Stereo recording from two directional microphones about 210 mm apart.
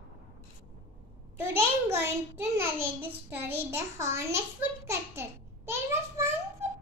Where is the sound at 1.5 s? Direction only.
10° right (ahead or behind).